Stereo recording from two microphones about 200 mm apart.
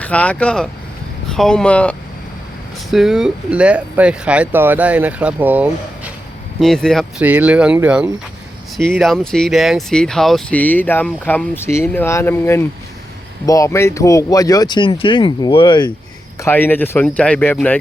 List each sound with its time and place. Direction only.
0.0 s speech: 5° left (ahead or behind)
6.6 s speech: centre (ahead or behind); by 15.9 s 25° left (ahead or behind)
16.4 s speech: 10° left (ahead or behind)